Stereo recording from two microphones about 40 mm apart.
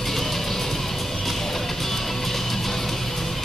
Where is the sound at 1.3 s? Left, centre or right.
Centre.